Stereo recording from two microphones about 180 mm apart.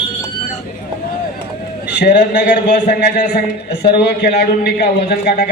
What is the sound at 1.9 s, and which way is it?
A man's voice, 70° left (ahead or behind).